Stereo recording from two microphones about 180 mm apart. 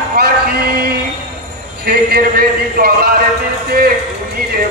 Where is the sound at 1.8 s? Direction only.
55° right (ahead or behind).